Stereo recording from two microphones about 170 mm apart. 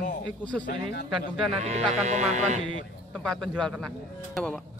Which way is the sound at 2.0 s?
45° right (ahead or behind).